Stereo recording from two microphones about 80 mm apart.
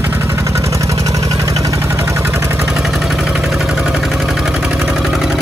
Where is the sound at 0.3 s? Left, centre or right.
Right.